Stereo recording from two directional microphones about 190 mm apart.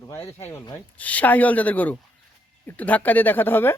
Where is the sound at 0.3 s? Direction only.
15° left (ahead or behind).